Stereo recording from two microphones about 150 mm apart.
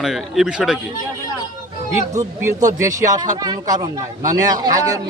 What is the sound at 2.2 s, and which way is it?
Speech, 20° right (ahead or behind).